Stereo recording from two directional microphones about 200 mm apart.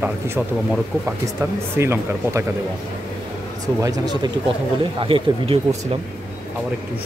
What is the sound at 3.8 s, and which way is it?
Speech, 20° right (ahead or behind).